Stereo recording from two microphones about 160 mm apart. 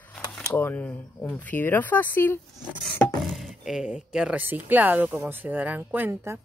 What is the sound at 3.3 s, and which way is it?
Speech, centre (ahead or behind).